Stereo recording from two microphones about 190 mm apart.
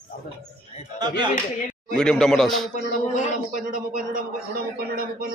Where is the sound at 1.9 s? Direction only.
5° left (ahead or behind).